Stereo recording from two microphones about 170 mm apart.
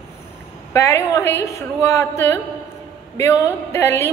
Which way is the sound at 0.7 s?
15° left (ahead or behind).